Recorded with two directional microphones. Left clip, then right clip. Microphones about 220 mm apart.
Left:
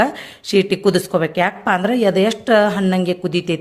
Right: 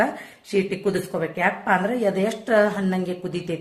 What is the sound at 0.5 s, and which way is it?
Speech, 50° left (ahead or behind).